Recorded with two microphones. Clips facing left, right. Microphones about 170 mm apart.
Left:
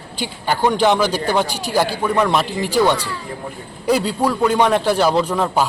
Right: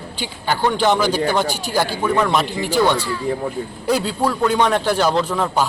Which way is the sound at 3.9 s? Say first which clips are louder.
Left 2 dB; 5° left (ahead or behind).